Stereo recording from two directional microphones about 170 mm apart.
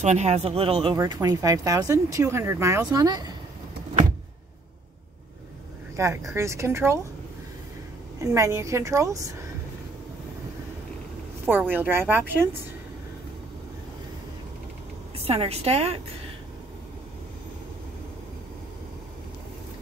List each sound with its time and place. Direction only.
0.0 s speech: 40° right (ahead or behind)
0.9 s speech: 20° right (ahead or behind)
5.9 s speech: 15° right (ahead or behind)
8.2 s speech: 20° right (ahead or behind)
11.4 s speech: 10° right (ahead or behind)
15.1 s speech: 35° right (ahead or behind)